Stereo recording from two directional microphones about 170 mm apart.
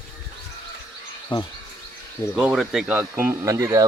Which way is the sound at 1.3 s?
30° left (ahead or behind).